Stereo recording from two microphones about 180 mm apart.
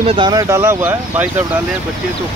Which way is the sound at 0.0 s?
30° right (ahead or behind).